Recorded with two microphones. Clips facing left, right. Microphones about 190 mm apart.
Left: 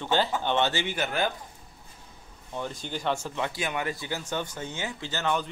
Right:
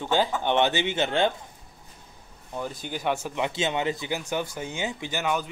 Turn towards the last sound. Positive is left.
turn(degrees=-10)  # may be behind; listen again after turning